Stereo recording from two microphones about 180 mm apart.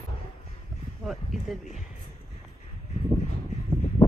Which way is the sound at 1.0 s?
Centre (ahead or behind).